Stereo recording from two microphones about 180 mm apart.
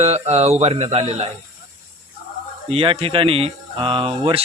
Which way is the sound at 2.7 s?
30° right (ahead or behind).